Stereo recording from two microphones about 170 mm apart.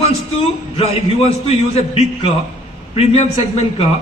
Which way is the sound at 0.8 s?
35° left (ahead or behind).